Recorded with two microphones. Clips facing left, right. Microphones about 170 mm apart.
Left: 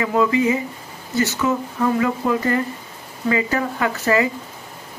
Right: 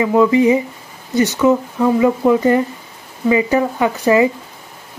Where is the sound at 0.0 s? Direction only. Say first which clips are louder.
Right 6 dB; 20° right (ahead or behind).